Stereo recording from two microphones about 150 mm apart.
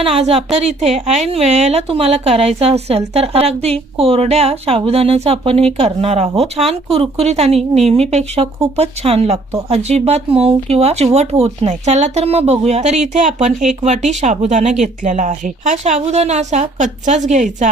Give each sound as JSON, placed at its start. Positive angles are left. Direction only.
{"t": 0.0, "sound": "a woman's voice", "side_deg": -40}